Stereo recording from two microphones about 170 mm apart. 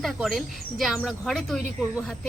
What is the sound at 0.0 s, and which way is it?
Speech, centre (ahead or behind).